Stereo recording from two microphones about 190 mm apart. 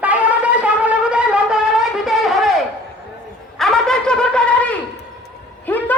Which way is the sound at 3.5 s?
Centre (ahead or behind).